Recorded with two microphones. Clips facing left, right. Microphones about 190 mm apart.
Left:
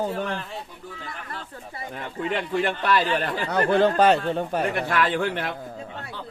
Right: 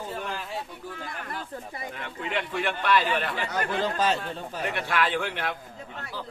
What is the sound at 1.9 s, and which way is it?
A man's voice, 40° left (ahead or behind).